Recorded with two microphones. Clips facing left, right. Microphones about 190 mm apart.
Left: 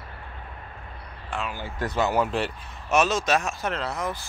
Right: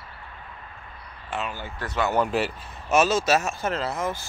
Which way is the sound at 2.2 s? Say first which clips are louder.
Right 1 dB; centre (ahead or behind).